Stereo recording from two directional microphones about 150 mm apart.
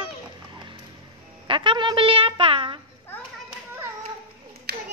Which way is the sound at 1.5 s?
35° right (ahead or behind).